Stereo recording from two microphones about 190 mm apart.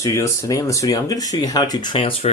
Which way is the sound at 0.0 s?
15° left (ahead or behind).